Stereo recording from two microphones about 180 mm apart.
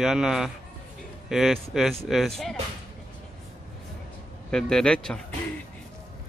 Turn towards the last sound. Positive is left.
turn(degrees=5)  # may be behind; listen again after turning